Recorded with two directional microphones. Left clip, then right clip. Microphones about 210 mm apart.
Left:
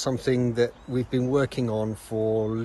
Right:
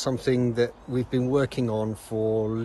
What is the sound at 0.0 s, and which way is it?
Speech, 10° right (ahead or behind).